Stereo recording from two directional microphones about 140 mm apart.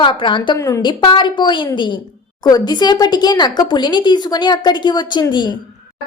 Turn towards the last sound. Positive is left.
turn(degrees=30)  # may be behind; listen again after turning